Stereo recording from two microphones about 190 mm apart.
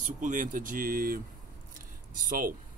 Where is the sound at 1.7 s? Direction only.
45° right (ahead or behind).